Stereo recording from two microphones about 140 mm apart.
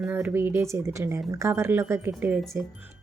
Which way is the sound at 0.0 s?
10° right (ahead or behind).